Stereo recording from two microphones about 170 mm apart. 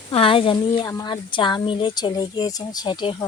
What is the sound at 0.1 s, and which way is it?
A woman's voice, 35° left (ahead or behind).